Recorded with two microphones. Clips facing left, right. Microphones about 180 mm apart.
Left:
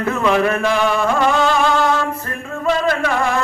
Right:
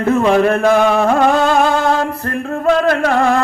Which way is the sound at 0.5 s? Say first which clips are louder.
Right 5 dB; 50° right (ahead or behind).